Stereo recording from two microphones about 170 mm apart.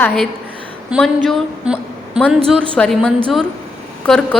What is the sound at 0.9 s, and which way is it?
A woman's voice, centre (ahead or behind).